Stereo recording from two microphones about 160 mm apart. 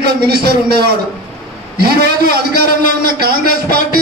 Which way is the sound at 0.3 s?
75° right (ahead or behind).